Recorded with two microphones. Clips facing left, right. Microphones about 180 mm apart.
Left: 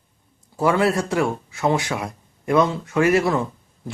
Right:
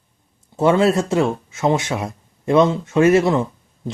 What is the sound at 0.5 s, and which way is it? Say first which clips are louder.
Speech: right 4 dB; 25° right (ahead or behind).